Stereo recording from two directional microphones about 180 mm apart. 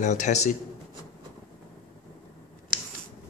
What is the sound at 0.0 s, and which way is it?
Speech, 40° left (ahead or behind).